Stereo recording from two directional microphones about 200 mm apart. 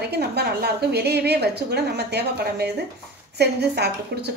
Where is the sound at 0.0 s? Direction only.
55° right (ahead or behind).